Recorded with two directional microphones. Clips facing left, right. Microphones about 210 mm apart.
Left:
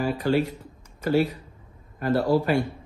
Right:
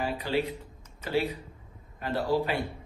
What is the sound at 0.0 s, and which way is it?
A man's voice, 45° left (ahead or behind).